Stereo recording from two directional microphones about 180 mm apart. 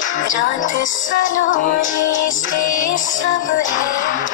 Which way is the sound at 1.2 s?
90° left.